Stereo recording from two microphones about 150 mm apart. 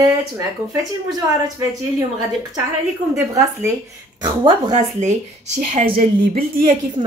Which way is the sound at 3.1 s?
20° right (ahead or behind).